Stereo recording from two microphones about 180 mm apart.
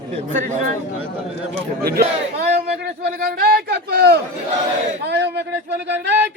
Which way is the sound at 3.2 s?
60° right (ahead or behind).